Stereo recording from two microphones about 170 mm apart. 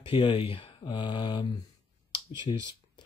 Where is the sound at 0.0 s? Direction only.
30° left (ahead or behind).